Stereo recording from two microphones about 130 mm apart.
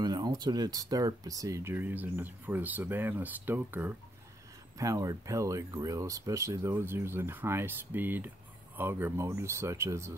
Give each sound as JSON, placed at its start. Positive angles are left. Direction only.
{"t": 0.0, "sound": "speech", "side_deg": -35}
{"t": 4.7, "sound": "speech", "side_deg": -25}